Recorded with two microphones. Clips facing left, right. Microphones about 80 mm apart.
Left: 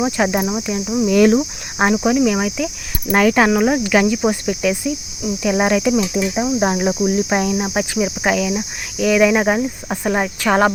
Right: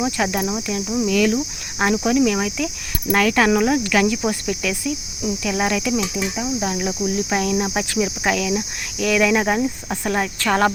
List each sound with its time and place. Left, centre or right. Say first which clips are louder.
0.0 s cricket: left 4 dB; centre
1.1 s speech: left 7 dB; left
1.8 s cricket: left 2 dB; centre
6.3 s cricket: left 6 dB; left
7.5 s cricket: left 2 dB; centre